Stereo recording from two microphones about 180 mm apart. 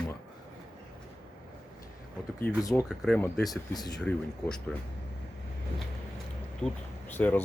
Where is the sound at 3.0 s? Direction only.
5° left (ahead or behind).